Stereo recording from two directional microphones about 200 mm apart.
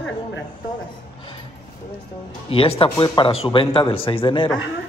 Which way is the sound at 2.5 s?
30° left (ahead or behind).